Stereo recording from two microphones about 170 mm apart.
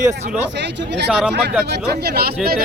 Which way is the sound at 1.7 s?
70° right (ahead or behind).